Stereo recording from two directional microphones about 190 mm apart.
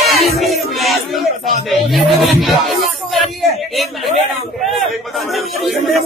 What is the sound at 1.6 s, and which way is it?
Speech, centre (ahead or behind).